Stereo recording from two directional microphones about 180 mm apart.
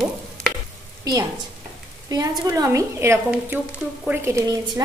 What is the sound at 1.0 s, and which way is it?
Speech, 20° right (ahead or behind).